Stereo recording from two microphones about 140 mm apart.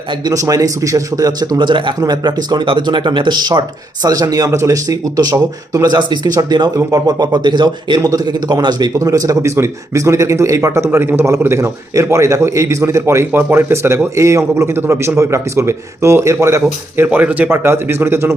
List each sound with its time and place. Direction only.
0.3 s speech: 25° right (ahead or behind)